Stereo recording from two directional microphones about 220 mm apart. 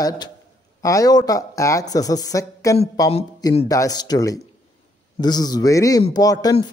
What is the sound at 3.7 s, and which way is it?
Speech, 15° left (ahead or behind).